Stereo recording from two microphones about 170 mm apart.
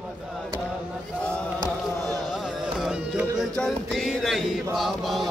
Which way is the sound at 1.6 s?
20° right (ahead or behind).